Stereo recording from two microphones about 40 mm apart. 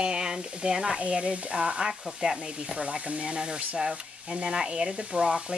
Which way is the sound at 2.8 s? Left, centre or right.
Right.